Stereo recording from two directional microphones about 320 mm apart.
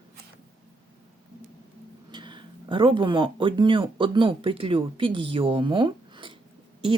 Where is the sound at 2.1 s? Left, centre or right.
Centre.